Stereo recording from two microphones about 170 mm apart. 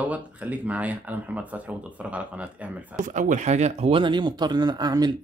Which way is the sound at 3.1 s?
50° right (ahead or behind).